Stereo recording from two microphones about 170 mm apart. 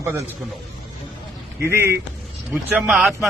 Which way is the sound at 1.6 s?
15° right (ahead or behind).